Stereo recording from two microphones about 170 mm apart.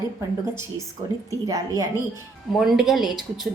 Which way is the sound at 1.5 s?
20° right (ahead or behind).